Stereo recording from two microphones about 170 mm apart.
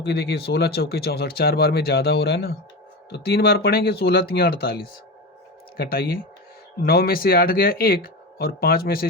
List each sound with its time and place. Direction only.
0.0 s speech: 70° left (ahead or behind)